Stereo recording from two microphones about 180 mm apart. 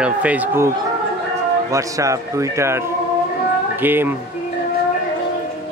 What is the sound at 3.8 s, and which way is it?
Speech, 10° right (ahead or behind).